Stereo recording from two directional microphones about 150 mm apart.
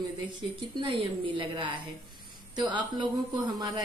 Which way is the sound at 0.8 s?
35° right (ahead or behind).